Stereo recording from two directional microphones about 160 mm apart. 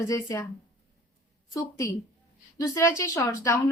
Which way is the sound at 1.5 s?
20° left (ahead or behind).